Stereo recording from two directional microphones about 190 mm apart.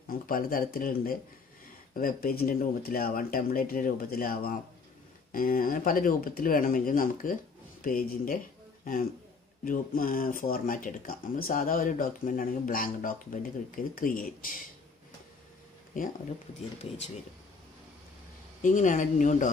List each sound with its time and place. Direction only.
0.1 s speech: 50° left (ahead or behind)
9.7 s speech: 50° left (ahead or behind)
18.6 s speech: 40° left (ahead or behind)